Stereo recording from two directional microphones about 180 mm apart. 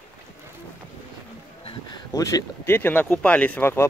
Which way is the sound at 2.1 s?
20° left (ahead or behind).